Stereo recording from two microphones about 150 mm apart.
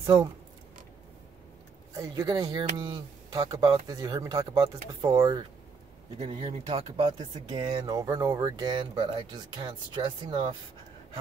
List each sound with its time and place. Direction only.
0.0 s speech: 25° right (ahead or behind)
2.0 s speech: 25° right (ahead or behind)
6.1 s a man's voice: 45° right (ahead or behind)